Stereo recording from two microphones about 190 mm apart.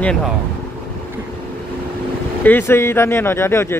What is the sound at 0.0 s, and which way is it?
Speech, 5° left (ahead or behind).